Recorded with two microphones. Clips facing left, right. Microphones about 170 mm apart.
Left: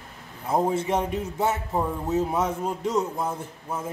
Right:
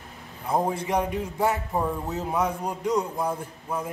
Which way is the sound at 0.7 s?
25° left (ahead or behind).